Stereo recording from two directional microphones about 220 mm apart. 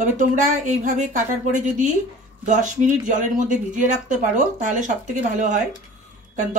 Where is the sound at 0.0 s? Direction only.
35° right (ahead or behind).